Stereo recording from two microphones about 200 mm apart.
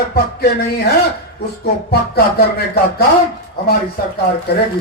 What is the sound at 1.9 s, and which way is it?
Speech, 50° left (ahead or behind).